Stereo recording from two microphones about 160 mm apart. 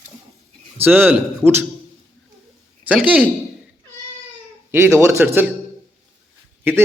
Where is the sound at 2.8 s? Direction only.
10° right (ahead or behind).